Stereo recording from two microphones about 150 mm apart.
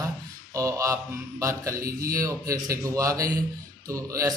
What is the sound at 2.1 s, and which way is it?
A man's voice, 20° right (ahead or behind).